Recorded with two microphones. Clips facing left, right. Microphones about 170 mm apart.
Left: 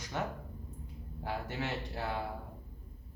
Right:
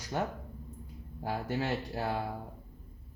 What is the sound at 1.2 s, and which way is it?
Speech, 40° right (ahead or behind).